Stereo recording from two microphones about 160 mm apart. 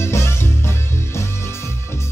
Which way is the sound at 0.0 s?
15° left (ahead or behind).